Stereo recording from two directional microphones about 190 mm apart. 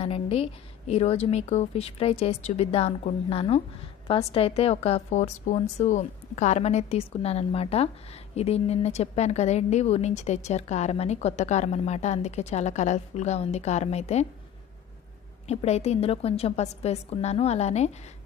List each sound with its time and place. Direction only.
0.0 s a woman's voice: 30° left (ahead or behind)
15.4 s a woman's voice: 35° left (ahead or behind)